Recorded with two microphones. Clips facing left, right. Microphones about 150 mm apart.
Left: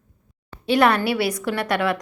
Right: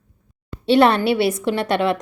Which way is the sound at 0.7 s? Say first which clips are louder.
Right 4 dB; 25° right (ahead or behind).